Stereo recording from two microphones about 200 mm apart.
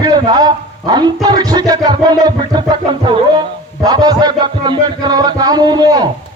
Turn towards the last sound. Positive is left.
turn(degrees=-20)  # may be behind; listen again after turning